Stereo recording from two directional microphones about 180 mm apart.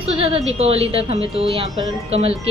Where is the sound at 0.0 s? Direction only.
30° right (ahead or behind).